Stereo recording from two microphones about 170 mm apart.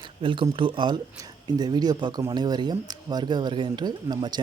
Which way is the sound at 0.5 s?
30° right (ahead or behind).